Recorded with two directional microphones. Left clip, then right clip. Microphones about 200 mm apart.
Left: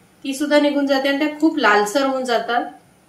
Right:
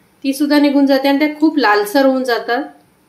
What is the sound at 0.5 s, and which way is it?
Speech, 40° right (ahead or behind).